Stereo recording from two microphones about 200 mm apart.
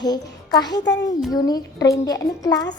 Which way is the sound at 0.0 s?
20° left (ahead or behind).